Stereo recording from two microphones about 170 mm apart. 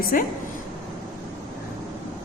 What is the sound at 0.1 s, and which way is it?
Speech, 55° left (ahead or behind).